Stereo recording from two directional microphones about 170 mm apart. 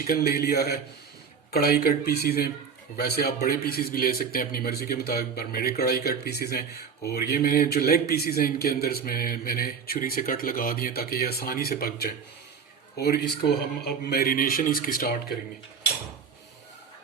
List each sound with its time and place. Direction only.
0.1 s a man's voice: 65° left (ahead or behind)
13.0 s a man's voice: 70° left (ahead or behind)